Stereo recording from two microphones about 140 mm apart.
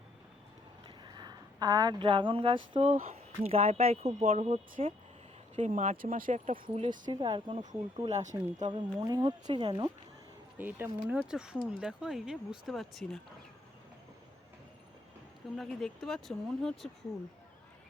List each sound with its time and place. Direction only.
0.9 s speech: 30° right (ahead or behind)
5.5 s speech: 55° right (ahead or behind); by 6.6 s 75° right (ahead or behind)
7.0 s speech: 30° right (ahead or behind)
8.1 s speech: 60° right (ahead or behind)
8.6 s speech: 30° right (ahead or behind)
10.6 s speech: 15° right (ahead or behind); by 13.1 s centre (ahead or behind)
15.5 s speech: centre (ahead or behind)